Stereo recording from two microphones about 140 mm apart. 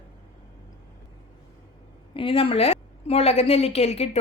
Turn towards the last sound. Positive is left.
turn(degrees=50)  # may be behind; listen again after turning